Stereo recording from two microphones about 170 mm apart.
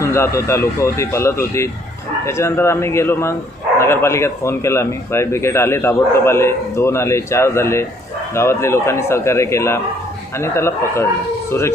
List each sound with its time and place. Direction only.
0.0 s a man's voice: 15° left (ahead or behind)